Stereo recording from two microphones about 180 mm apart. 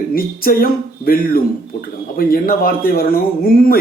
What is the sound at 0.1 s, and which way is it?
Speech, 55° left (ahead or behind).